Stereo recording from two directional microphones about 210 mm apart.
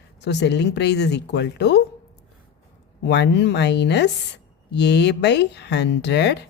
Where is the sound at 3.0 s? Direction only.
55° left (ahead or behind).